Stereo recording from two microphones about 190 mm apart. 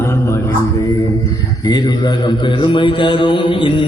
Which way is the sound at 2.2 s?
25° left (ahead or behind).